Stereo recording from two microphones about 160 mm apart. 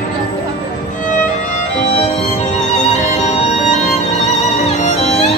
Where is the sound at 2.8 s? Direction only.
45° left (ahead or behind).